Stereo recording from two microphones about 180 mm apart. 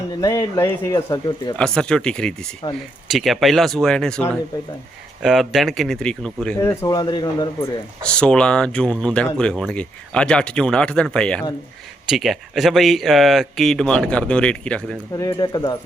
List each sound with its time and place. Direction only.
0.2 s speech: 15° left (ahead or behind)
1.5 s speech: 5° left (ahead or behind)
2.6 s speech: 25° left (ahead or behind)
3.1 s speech: centre (ahead or behind)
6.6 s speech: 20° left (ahead or behind)
8.0 s speech: 5° left (ahead or behind)
15.2 s speech: 20° left (ahead or behind)